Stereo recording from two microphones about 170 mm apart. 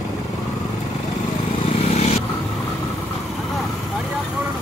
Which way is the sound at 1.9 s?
40° left (ahead or behind).